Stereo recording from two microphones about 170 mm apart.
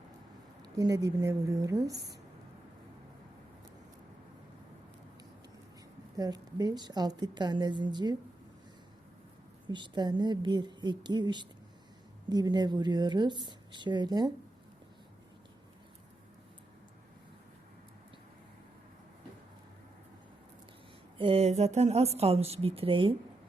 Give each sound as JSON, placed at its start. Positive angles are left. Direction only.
{"t": 0.6, "sound": "a woman's voice", "side_deg": -20}
{"t": 6.1, "sound": "a woman's voice", "side_deg": -20}
{"t": 9.6, "sound": "a woman's voice", "side_deg": -25}
{"t": 21.2, "sound": "speech", "side_deg": -35}